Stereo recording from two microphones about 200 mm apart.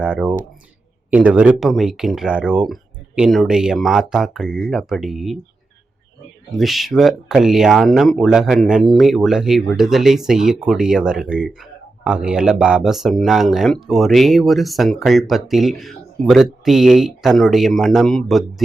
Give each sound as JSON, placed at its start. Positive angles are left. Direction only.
{"t": 0.0, "sound": "speech", "side_deg": -5}
{"t": 6.6, "sound": "speech", "side_deg": 0}